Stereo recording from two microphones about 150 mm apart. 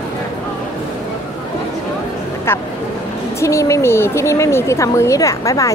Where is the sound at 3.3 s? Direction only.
20° left (ahead or behind).